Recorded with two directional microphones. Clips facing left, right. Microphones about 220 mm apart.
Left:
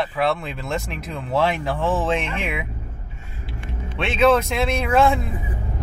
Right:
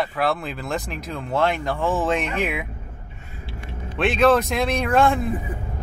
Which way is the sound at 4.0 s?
Centre (ahead or behind).